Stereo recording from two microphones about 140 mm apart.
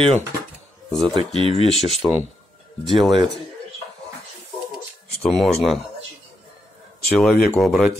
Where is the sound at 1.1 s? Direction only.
40° right (ahead or behind).